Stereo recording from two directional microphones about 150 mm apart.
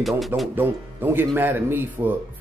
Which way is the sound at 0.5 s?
15° right (ahead or behind).